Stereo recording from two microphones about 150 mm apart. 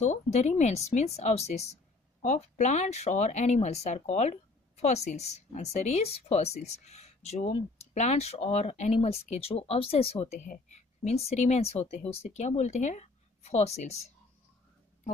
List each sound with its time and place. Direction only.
0.0 s speech: 50° left (ahead or behind)